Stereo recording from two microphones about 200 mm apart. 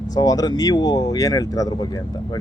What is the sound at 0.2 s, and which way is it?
Speech, 20° left (ahead or behind).